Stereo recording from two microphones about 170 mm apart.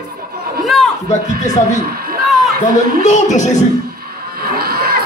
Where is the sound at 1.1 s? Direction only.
45° left (ahead or behind).